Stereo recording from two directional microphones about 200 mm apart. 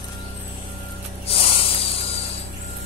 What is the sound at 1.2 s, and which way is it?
Snake, 30° left (ahead or behind).